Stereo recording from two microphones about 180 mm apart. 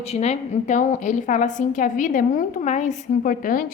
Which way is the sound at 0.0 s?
35° left (ahead or behind).